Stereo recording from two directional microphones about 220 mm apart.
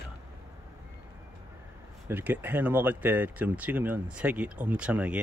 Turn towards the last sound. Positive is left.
turn(degrees=-5)  # may be behind; listen again after turning